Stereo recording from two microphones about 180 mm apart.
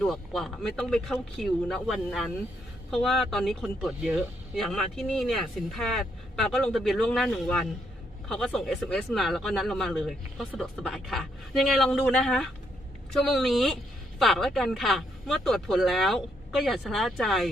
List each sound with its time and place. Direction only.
0.0 s speech: centre (ahead or behind)